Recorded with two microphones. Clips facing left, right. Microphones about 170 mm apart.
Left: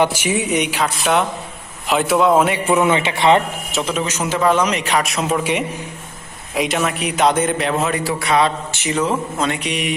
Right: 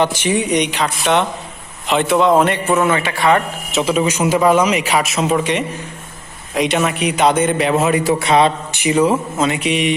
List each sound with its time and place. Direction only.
0.0 s a man's voice: 10° left (ahead or behind)
2.7 s a man's voice: 20° left (ahead or behind)
3.7 s a man's voice: 5° right (ahead or behind)
8.2 s a man's voice: 25° right (ahead or behind); by 9.9 s centre (ahead or behind)